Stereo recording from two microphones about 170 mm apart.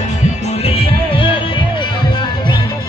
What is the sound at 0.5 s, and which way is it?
Music, 35° left (ahead or behind).